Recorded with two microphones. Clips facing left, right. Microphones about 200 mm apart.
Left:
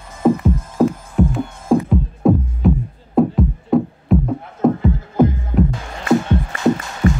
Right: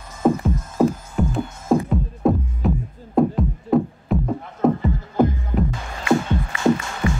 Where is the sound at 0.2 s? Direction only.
Centre (ahead or behind).